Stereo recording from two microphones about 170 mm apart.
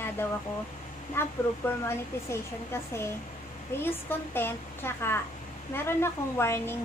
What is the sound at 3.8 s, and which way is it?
A woman's voice, 15° left (ahead or behind).